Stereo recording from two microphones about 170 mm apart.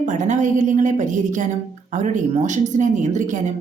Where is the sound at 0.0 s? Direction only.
45° right (ahead or behind).